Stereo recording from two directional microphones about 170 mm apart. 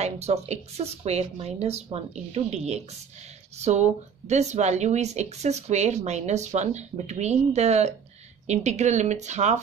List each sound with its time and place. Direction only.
0.0 s speech: 40° right (ahead or behind)